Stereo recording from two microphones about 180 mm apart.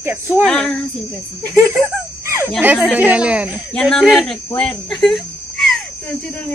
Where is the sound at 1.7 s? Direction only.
15° right (ahead or behind).